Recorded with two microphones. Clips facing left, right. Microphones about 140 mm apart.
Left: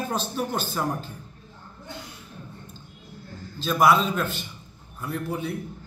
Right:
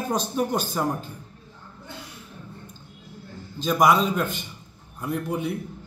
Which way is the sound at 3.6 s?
15° right (ahead or behind).